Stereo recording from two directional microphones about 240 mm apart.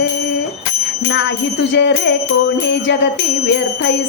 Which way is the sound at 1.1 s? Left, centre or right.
Left.